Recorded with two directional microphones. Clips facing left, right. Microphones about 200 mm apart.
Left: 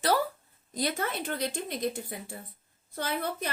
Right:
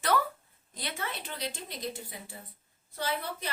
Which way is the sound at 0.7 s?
40° left (ahead or behind).